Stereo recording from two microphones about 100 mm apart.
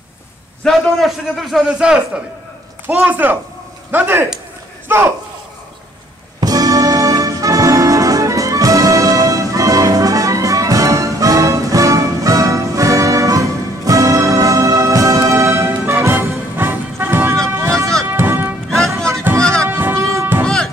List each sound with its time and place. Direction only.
0.7 s a man's voice: centre (ahead or behind); by 4.3 s 20° right (ahead or behind)
4.8 s a sound: 20° right (ahead or behind)
6.4 s music: 40° right (ahead or behind)
17.5 s a sound: 30° right (ahead or behind)
18.1 s music: 20° right (ahead or behind)
20.4 s music: 5° left (ahead or behind)